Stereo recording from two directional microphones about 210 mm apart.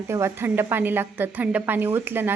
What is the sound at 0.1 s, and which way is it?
A woman's voice, 15° right (ahead or behind).